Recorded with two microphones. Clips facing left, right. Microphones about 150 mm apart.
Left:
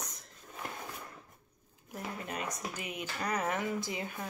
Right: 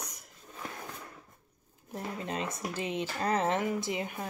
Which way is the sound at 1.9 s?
25° right (ahead or behind).